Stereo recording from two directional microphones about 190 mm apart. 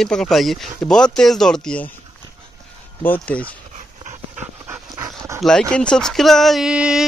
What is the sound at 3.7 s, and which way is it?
Dog, 40° right (ahead or behind).